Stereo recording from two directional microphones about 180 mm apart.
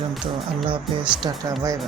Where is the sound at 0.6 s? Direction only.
25° right (ahead or behind).